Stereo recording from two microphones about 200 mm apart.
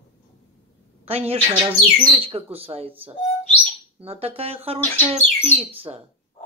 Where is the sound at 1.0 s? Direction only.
30° right (ahead or behind).